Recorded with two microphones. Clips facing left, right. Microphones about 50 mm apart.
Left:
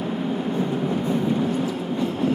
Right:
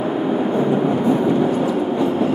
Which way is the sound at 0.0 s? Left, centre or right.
Right.